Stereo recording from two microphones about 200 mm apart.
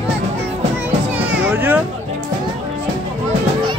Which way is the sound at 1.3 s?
5° right (ahead or behind).